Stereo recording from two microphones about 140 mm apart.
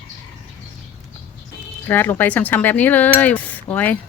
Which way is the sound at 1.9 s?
15° left (ahead or behind).